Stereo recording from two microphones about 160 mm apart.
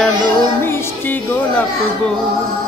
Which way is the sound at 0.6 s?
15° left (ahead or behind).